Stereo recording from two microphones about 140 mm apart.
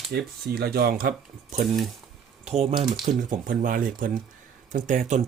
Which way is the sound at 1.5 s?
55° right (ahead or behind).